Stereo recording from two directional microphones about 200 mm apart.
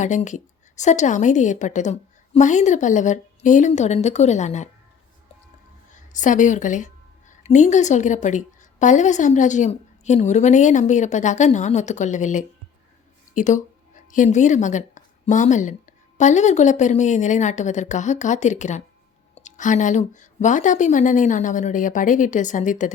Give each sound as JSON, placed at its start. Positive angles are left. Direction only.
{"t": 0.0, "sound": "a woman's voice", "side_deg": 40}
{"t": 5.9, "sound": "a woman's voice", "side_deg": 40}